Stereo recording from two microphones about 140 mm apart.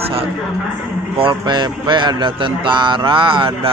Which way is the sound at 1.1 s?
35° right (ahead or behind).